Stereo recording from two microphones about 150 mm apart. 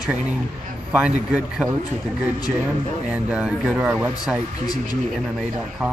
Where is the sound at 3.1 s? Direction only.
5° right (ahead or behind).